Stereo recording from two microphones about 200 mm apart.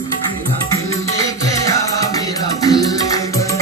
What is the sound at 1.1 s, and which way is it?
Music, 15° left (ahead or behind).